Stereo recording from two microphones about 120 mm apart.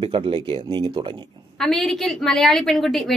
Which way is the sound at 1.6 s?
Centre (ahead or behind).